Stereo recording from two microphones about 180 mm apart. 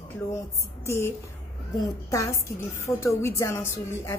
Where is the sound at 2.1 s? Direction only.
15° left (ahead or behind).